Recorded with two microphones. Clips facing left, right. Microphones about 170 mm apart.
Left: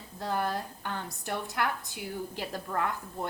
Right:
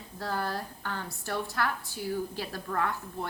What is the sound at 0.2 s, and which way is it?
A woman's voice, 20° left (ahead or behind).